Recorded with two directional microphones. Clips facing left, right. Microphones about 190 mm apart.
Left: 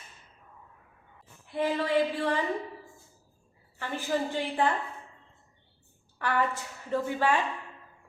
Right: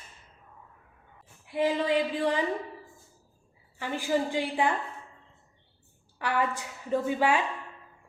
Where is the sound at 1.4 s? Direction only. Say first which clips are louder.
Right 2 dB; 15° right (ahead or behind).